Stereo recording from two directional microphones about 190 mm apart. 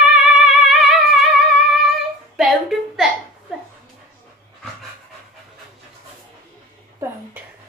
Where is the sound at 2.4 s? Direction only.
Centre (ahead or behind).